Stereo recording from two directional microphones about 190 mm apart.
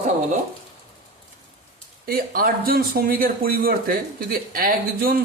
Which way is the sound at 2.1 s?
50° right (ahead or behind).